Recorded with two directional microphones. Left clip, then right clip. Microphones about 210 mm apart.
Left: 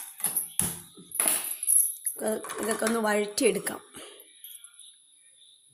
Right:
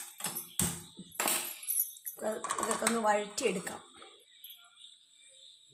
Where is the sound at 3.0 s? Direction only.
40° left (ahead or behind).